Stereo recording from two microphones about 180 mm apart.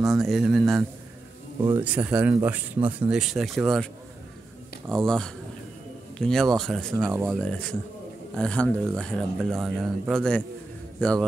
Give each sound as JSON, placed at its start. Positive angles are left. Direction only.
{"t": 0.0, "sound": "speech", "side_deg": 0}